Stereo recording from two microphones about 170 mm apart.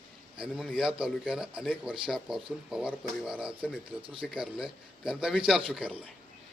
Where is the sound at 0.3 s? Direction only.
5° right (ahead or behind).